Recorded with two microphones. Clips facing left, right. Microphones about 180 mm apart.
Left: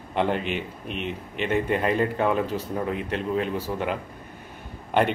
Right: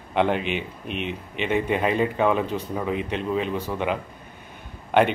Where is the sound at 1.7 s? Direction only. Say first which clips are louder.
Right 1 dB; 5° right (ahead or behind).